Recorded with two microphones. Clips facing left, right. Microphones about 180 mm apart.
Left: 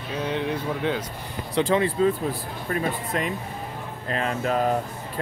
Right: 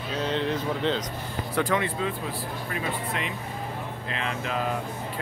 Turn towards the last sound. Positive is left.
turn(degrees=45)  # may be behind; listen again after turning